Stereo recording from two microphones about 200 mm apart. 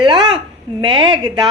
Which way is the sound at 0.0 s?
25° right (ahead or behind).